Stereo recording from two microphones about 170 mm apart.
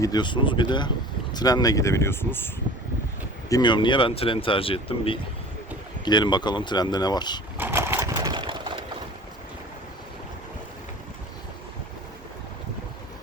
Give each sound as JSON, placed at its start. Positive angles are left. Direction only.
{"t": 0.0, "sound": "speech", "side_deg": 25}
{"t": 3.5, "sound": "speech", "side_deg": 25}
{"t": 7.6, "sound": "pigeon", "side_deg": -15}